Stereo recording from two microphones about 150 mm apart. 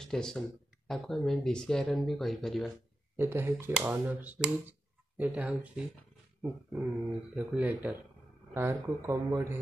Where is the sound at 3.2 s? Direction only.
15° right (ahead or behind).